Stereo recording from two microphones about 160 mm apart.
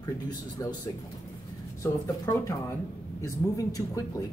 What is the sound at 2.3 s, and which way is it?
Speech, 20° left (ahead or behind).